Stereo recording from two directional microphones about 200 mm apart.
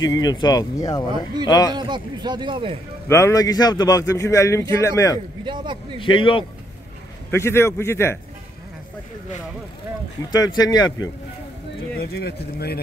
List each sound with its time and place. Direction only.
0.0 s speech: 20° left (ahead or behind)
1.7 s a man's voice: 20° right (ahead or behind)
3.1 s a man's voice: 15° left (ahead or behind)
5.4 s a man's voice: 25° right (ahead or behind)
5.9 s speech: 25° left (ahead or behind)
7.2 s a man's voice: 15° left (ahead or behind)
10.3 s speech: 20° left (ahead or behind)
12.0 s speech: 55° left (ahead or behind)